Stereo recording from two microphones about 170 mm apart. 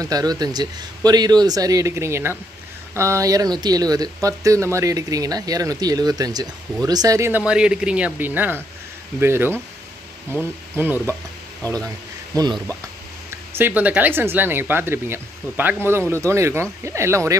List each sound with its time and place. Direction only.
0.0 s speech: 20° right (ahead or behind)
12.3 s speech: 20° right (ahead or behind)